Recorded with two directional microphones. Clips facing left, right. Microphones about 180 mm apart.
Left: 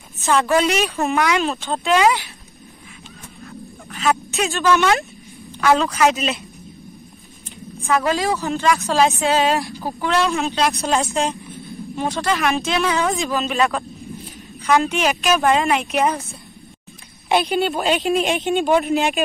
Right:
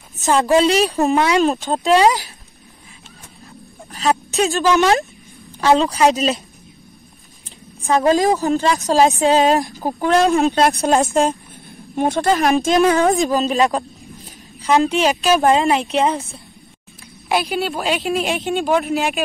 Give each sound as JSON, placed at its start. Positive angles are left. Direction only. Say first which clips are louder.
{"t": 0.2, "sound": "a woman's voice", "louder": "right 3 dB", "side_deg": -35}
{"t": 3.9, "sound": "speech", "louder": "right 2 dB", "side_deg": -35}
{"t": 7.8, "sound": "speech", "louder": "right 5 dB", "side_deg": -35}
{"t": 17.3, "sound": "speech", "louder": "left 2 dB", "side_deg": 0}